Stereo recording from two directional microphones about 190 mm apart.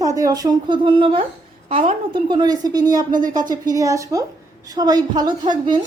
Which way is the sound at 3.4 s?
20° right (ahead or behind).